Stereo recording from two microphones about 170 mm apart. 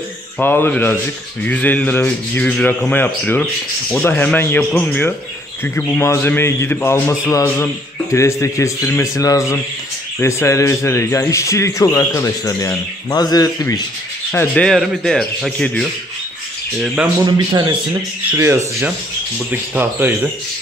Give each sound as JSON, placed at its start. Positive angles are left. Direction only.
{"t": 0.4, "sound": "a man's voice", "side_deg": 10}
{"t": 14.3, "sound": "speech", "side_deg": 10}
{"t": 17.5, "sound": "speech", "side_deg": -25}
{"t": 18.3, "sound": "speech", "side_deg": -15}